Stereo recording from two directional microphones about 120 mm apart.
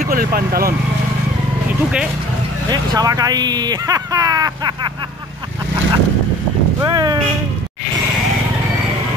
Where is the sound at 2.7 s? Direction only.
35° right (ahead or behind).